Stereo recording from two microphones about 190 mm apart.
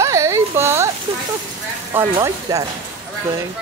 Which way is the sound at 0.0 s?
15° right (ahead or behind).